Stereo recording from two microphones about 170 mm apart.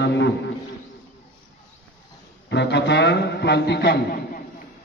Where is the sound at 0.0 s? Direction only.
90° left.